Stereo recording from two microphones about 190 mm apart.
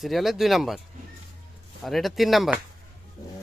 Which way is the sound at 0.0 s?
Centre (ahead or behind).